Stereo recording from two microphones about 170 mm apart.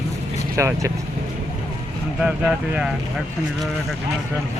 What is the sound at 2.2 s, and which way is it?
Speech, 5° right (ahead or behind).